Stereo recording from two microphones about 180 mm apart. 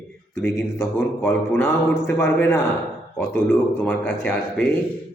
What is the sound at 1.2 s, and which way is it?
A man's voice, 10° left (ahead or behind).